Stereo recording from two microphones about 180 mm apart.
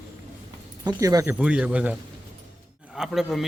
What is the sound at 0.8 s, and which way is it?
A man's voice, 20° right (ahead or behind).